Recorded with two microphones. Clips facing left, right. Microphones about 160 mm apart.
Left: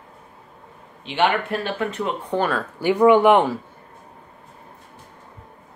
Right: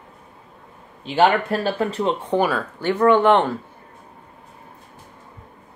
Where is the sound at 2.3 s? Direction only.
10° right (ahead or behind).